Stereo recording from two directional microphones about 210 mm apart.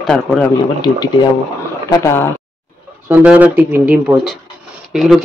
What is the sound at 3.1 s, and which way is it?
Speech, 5° right (ahead or behind).